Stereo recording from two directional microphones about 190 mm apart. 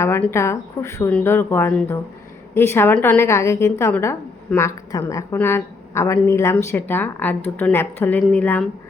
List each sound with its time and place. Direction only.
0.0 s a woman's voice: 10° left (ahead or behind)